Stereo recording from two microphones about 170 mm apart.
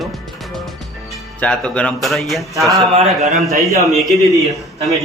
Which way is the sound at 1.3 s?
5° left (ahead or behind).